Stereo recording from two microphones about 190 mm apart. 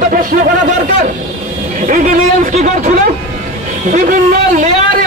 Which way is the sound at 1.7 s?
45° right (ahead or behind).